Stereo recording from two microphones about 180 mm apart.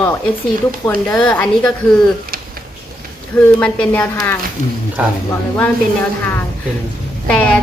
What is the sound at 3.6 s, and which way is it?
Speech, 5° left (ahead or behind).